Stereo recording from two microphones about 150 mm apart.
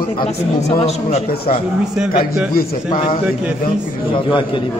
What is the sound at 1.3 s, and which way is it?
Speech, 90° left.